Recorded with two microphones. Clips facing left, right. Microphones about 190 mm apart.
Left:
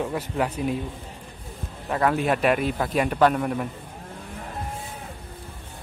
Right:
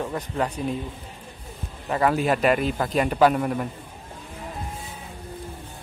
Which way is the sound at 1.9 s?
Centre (ahead or behind).